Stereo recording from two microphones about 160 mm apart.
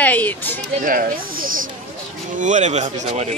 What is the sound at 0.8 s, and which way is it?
Speech, 60° right (ahead or behind).